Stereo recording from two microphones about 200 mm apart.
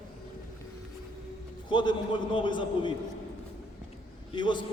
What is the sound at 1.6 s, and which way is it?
A man's voice, 25° left (ahead or behind).